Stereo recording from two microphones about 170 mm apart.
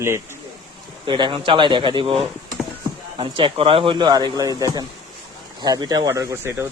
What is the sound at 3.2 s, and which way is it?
Speech, 30° right (ahead or behind).